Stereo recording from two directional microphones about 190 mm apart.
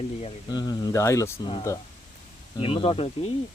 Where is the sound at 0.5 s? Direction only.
20° left (ahead or behind).